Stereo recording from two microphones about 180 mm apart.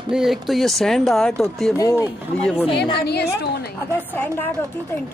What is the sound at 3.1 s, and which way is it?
Speech, 65° left (ahead or behind).